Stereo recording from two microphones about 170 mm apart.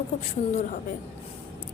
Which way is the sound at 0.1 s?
45° left (ahead or behind).